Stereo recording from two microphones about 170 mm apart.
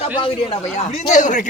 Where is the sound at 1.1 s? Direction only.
45° left (ahead or behind).